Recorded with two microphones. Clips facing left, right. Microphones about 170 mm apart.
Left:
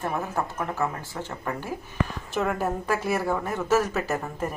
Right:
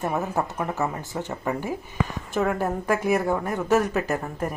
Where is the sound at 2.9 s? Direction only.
15° right (ahead or behind).